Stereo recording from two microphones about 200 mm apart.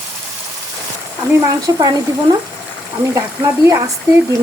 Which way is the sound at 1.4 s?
15° right (ahead or behind).